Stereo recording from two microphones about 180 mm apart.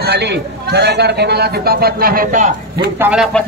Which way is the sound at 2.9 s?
10° right (ahead or behind).